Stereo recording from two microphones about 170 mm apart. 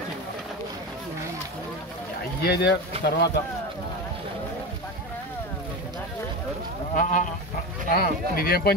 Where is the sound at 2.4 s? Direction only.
75° left (ahead or behind).